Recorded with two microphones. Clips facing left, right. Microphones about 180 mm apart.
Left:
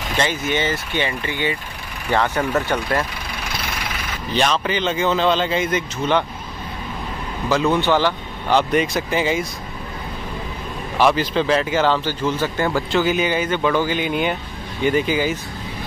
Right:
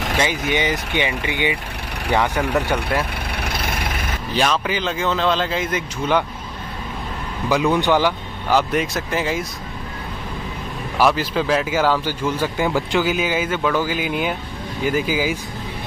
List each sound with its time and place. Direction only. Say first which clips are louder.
0.2 s speech: left 1 dB; 15° right (ahead or behind)
3.3 s vehicle: right 3 dB; 60° right (ahead or behind)
4.3 s a man's voice: left 1 dB; 5° right (ahead or behind)
7.8 s a man's voice: even; 15° right (ahead or behind)
11.0 s a man's voice: left 1 dB; 5° right (ahead or behind)